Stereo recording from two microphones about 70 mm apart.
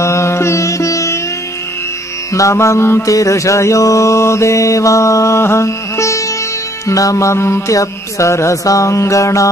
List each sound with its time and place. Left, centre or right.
0.0 s music: left
2.3 s mantra: left